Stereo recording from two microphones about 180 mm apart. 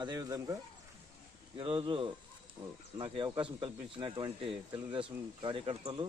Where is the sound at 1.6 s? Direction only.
30° right (ahead or behind).